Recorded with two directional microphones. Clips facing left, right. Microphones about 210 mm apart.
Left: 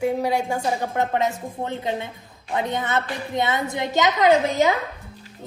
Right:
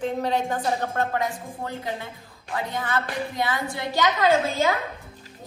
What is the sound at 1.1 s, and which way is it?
A woman's voice, 25° left (ahead or behind).